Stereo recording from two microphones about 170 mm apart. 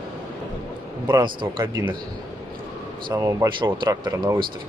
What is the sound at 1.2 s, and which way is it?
Speech, 30° right (ahead or behind).